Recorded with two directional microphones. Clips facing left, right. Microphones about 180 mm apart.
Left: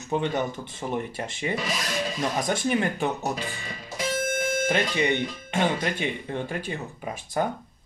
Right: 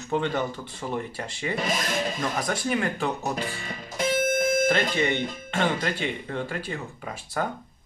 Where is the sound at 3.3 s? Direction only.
50° right (ahead or behind).